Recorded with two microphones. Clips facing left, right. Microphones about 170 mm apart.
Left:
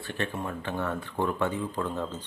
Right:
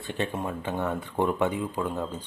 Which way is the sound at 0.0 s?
20° right (ahead or behind).